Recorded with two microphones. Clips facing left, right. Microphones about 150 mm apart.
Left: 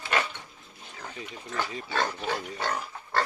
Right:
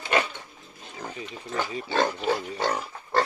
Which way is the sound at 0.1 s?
20° right (ahead or behind).